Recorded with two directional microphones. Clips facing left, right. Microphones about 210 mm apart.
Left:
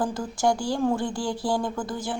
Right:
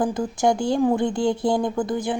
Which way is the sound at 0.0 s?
20° right (ahead or behind).